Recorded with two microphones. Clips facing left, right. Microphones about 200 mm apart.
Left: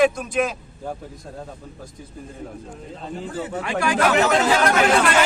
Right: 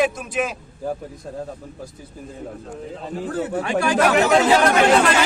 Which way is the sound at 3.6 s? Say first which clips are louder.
Right 1 dB; 25° right (ahead or behind).